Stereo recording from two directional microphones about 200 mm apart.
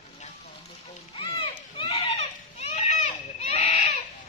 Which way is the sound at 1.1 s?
25° left (ahead or behind).